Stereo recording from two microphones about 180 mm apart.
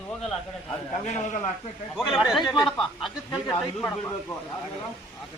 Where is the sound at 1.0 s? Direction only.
40° left (ahead or behind).